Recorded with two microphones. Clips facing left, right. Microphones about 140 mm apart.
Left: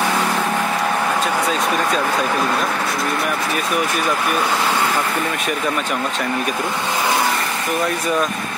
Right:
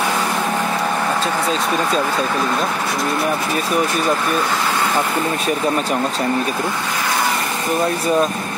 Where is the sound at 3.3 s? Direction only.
30° right (ahead or behind).